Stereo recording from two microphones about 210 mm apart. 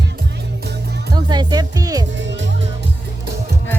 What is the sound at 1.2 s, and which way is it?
Music, 20° right (ahead or behind).